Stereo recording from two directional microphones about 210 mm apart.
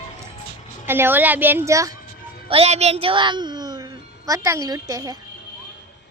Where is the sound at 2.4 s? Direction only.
30° right (ahead or behind).